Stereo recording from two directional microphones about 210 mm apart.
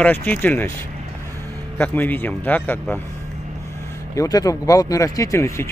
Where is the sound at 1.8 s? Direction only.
10° left (ahead or behind).